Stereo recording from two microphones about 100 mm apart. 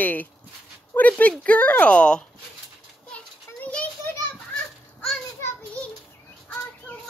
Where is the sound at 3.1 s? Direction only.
15° left (ahead or behind).